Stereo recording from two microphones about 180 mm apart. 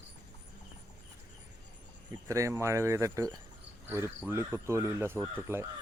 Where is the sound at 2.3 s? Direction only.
15° right (ahead or behind).